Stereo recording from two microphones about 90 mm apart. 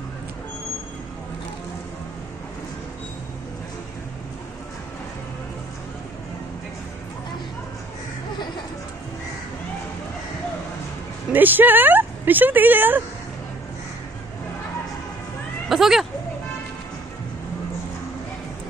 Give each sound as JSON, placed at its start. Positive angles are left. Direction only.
{"t": 11.3, "sound": "speech", "side_deg": -20}
{"t": 15.7, "sound": "speech", "side_deg": -5}